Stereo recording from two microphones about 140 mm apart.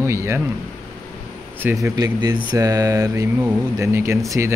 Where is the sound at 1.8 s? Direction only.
25° right (ahead or behind).